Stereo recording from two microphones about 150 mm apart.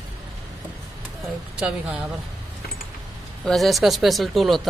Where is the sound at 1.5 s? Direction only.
5° right (ahead or behind).